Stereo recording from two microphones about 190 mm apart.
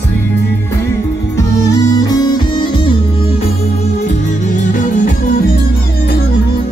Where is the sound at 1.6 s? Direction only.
20° left (ahead or behind).